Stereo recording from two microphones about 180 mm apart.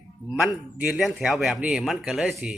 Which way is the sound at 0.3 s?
5° right (ahead or behind).